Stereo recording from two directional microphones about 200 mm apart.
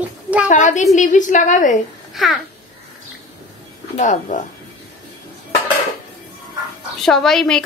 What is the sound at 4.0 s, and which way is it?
Speech, 40° left (ahead or behind).